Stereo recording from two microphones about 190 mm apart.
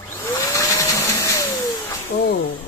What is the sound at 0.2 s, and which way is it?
Vacuum cleaner, 15° left (ahead or behind).